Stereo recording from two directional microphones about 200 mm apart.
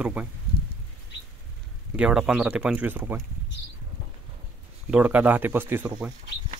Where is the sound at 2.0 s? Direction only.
5° right (ahead or behind).